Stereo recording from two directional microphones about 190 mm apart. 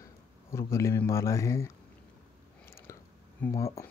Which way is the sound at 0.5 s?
15° left (ahead or behind).